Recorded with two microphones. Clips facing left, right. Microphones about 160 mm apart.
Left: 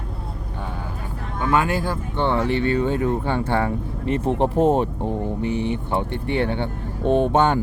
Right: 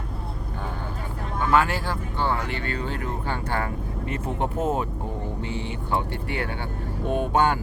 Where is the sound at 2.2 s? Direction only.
25° left (ahead or behind).